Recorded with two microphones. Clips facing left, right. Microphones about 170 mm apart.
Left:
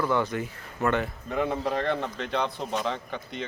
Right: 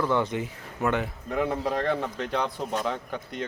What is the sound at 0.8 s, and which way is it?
A man's voice, 10° right (ahead or behind).